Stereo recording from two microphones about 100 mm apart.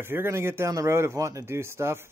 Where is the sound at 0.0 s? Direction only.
25° right (ahead or behind).